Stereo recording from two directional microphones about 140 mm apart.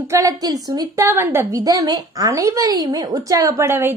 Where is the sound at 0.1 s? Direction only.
25° right (ahead or behind).